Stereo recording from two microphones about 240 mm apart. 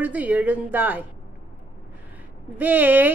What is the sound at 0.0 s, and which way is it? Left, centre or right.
A woman's voice, centre.